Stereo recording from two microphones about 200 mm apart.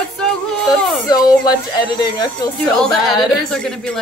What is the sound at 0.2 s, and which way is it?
Music, centre (ahead or behind).